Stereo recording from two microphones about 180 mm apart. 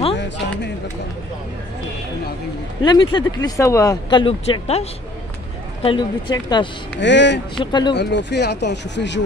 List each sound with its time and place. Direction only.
2.8 s speech: 25° left (ahead or behind)
7.0 s speech: 80° left
7.5 s speech: 25° left (ahead or behind)
7.9 s speech: 70° left (ahead or behind)